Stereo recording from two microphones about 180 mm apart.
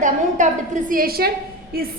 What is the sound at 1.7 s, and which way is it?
Music, 55° right (ahead or behind).